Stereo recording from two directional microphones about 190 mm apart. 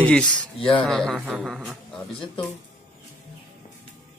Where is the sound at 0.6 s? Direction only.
30° left (ahead or behind).